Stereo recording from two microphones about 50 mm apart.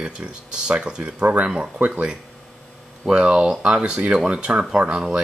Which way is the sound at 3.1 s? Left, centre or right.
Centre.